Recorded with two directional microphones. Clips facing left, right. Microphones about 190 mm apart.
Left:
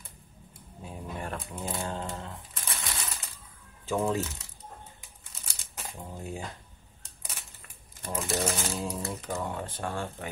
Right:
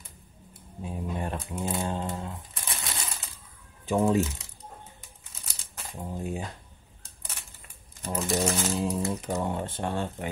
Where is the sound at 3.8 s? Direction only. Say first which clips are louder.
Right 5 dB; 15° right (ahead or behind).